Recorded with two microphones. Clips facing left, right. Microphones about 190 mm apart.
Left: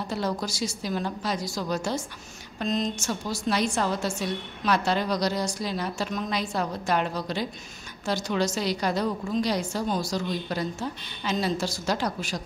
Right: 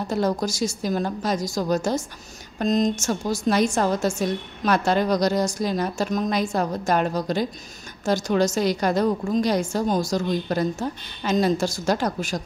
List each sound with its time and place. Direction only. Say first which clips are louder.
0.0 s a woman's voice: right 6 dB; 45° right (ahead or behind)